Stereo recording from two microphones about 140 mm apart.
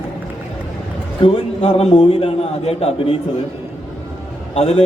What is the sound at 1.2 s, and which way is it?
A man's voice, 45° left (ahead or behind).